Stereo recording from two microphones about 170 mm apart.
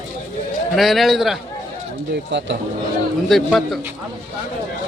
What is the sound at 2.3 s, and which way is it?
Speech, 90° right.